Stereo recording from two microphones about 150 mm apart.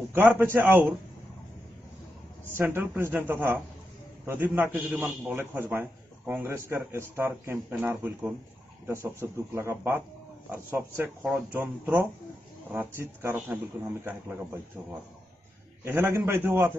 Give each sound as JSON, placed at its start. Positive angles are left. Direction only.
{"t": 0.1, "sound": "a man's voice", "side_deg": -15}
{"t": 2.5, "sound": "a man's voice", "side_deg": -15}